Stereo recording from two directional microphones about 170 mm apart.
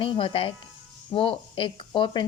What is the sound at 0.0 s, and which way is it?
A woman's voice, 30° left (ahead or behind).